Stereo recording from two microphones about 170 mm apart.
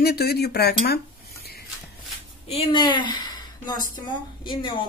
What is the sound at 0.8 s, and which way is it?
Dishes, 65° left (ahead or behind).